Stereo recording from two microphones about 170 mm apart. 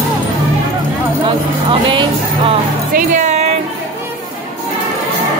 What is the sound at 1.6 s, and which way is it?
Music, 30° right (ahead or behind).